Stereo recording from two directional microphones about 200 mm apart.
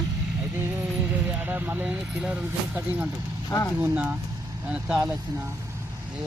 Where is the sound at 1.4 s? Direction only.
10° right (ahead or behind).